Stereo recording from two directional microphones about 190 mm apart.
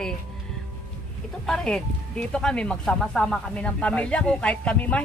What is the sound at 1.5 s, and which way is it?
Speech, 5° left (ahead or behind).